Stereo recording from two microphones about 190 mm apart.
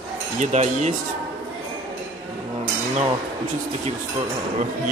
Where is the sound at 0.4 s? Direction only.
40° right (ahead or behind).